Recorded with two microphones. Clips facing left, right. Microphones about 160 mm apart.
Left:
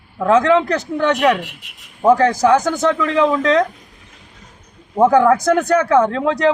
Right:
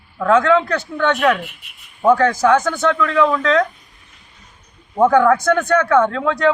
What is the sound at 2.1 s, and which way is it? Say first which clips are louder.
Speech: left 1 dB; 40° left (ahead or behind).